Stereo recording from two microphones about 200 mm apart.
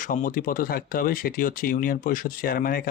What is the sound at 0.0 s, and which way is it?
Speech, 40° left (ahead or behind).